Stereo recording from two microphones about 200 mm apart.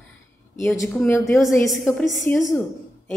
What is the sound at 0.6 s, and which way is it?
Speech, 15° left (ahead or behind).